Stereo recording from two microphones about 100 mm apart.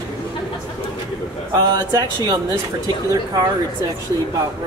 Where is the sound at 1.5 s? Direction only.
40° right (ahead or behind).